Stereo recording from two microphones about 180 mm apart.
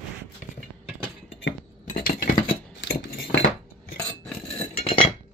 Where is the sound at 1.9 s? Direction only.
60° left (ahead or behind).